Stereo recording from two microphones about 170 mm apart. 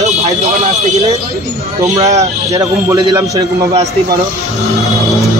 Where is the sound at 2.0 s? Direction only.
20° right (ahead or behind).